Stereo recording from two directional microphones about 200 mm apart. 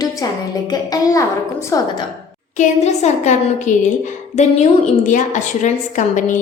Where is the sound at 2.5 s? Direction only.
35° left (ahead or behind).